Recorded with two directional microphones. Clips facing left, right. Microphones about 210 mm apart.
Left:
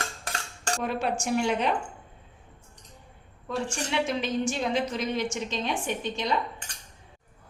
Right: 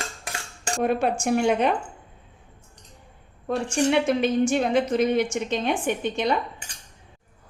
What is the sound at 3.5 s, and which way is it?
A woman's voice, 55° right (ahead or behind).